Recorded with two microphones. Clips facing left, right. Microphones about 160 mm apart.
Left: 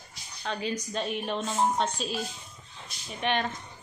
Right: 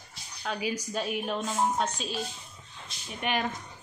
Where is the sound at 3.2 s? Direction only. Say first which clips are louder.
Left 1 dB; 5° right (ahead or behind).